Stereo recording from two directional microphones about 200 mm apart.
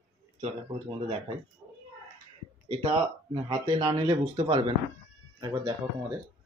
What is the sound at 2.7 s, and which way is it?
Speech, 25° right (ahead or behind).